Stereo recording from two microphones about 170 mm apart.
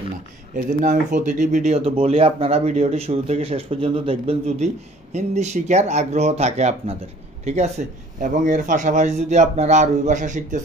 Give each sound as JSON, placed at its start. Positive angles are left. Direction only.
{"t": 0.6, "sound": "a man's voice", "side_deg": -50}